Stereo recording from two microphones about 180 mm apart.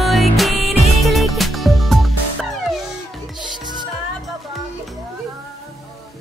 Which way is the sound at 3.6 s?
25° right (ahead or behind).